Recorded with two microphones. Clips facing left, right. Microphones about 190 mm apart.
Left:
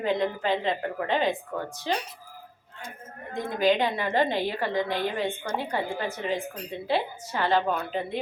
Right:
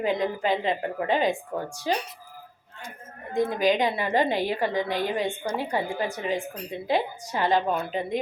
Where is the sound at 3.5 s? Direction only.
10° right (ahead or behind).